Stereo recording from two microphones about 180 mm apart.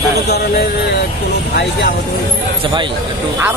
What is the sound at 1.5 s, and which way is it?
Speech, 70° left (ahead or behind).